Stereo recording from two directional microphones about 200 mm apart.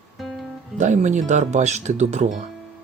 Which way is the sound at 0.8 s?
35° right (ahead or behind).